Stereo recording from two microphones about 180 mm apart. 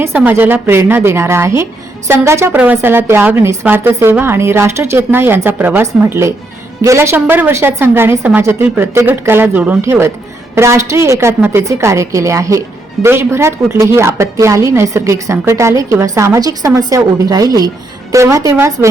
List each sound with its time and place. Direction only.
0.0 s a woman's voice: 10° right (ahead or behind)